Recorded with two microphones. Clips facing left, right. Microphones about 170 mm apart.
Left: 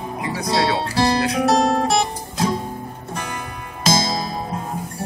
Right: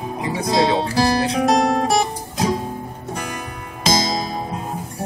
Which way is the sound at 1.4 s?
15° right (ahead or behind).